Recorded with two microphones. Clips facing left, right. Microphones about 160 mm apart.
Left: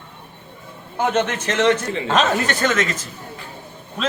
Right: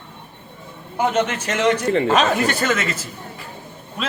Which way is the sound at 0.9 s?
10° right (ahead or behind).